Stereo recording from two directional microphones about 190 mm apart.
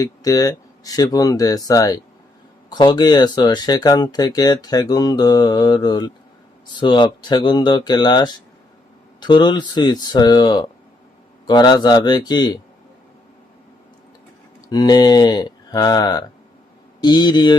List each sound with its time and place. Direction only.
0.0 s speech: 20° left (ahead or behind)
14.7 s speech: 20° left (ahead or behind)